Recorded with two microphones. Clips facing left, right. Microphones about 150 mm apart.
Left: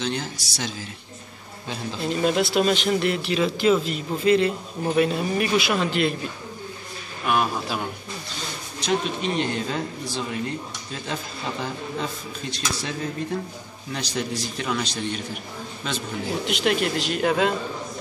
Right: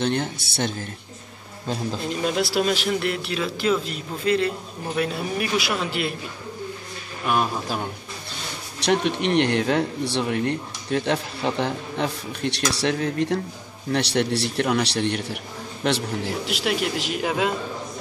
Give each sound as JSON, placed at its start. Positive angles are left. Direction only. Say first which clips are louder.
{"t": 0.0, "sound": "a man's voice", "louder": "right 4 dB", "side_deg": -55}
{"t": 2.0, "sound": "a man's voice", "louder": "left 4 dB", "side_deg": 0}
{"t": 8.7, "sound": "speech", "louder": "right 3 dB", "side_deg": -70}
{"t": 16.4, "sound": "a man's voice", "louder": "left 4 dB", "side_deg": -5}